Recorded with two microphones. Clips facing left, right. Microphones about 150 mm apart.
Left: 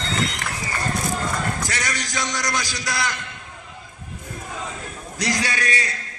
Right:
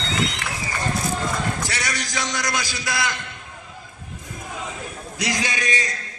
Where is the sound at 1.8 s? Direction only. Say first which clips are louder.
Even; 10° right (ahead or behind).